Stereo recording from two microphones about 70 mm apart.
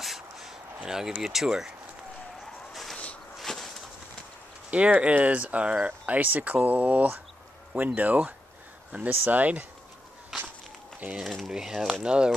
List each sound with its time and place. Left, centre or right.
0.0 s a sound: centre
0.8 s speech: centre
2.7 s a sound: centre
4.6 s speech: centre
10.3 s walk: centre
11.0 s speech: right
11.7 s speech: centre